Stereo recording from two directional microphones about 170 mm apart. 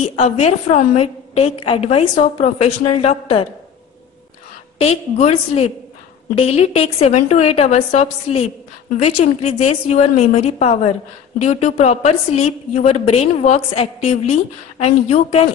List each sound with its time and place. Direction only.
0.1 s a woman's voice: 40° left (ahead or behind)
4.7 s a woman's voice: 40° left (ahead or behind)